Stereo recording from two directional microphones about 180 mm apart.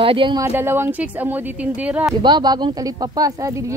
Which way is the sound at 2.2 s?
25° right (ahead or behind).